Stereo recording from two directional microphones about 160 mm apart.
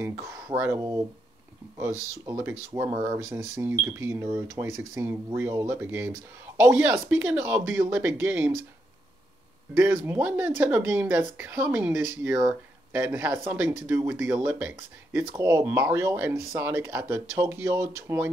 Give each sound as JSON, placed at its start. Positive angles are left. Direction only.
{"t": 0.0, "sound": "speech", "side_deg": -15}
{"t": 2.2, "sound": "speech", "side_deg": -15}
{"t": 9.8, "sound": "speech", "side_deg": -15}